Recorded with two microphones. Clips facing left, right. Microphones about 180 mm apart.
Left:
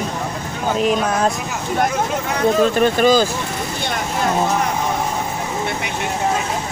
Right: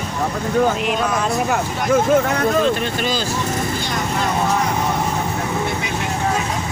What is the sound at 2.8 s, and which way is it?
Speech, 45° left (ahead or behind).